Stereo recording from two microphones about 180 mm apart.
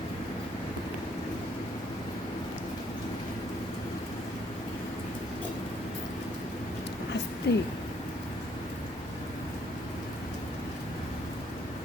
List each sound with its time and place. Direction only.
7.5 s speech: 70° left (ahead or behind)